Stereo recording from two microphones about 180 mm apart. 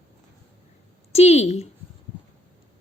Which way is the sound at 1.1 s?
35° left (ahead or behind).